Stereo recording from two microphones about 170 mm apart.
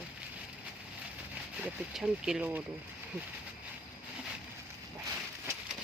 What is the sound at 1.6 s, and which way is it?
Speech, 5° right (ahead or behind).